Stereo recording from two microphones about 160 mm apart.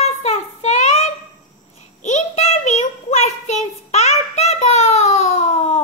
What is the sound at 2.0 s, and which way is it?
Child singing, 45° left (ahead or behind).